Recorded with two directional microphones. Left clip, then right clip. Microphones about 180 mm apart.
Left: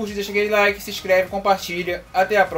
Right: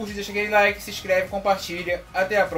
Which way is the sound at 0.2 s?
30° left (ahead or behind).